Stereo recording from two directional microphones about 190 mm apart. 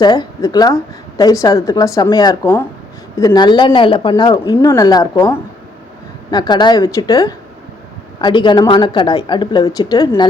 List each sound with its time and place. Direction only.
0.0 s a woman's voice: 20° left (ahead or behind)